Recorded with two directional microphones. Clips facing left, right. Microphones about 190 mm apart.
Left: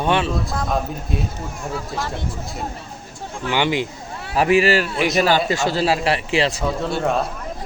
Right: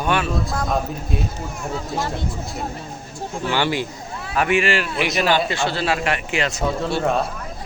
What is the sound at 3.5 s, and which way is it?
Speech, 15° left (ahead or behind).